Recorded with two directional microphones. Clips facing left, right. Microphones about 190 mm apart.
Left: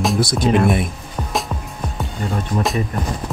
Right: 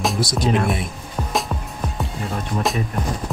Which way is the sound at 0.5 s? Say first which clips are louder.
Left 5 dB; centre (ahead or behind).